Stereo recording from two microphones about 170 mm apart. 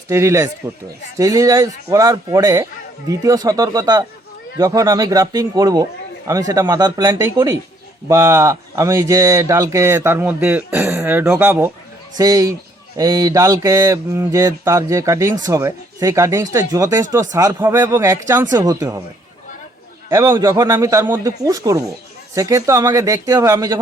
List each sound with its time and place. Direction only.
0.1 s speech: 15° right (ahead or behind)
20.1 s speech: 20° right (ahead or behind)